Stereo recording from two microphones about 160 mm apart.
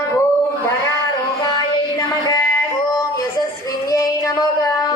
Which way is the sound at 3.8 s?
20° left (ahead or behind).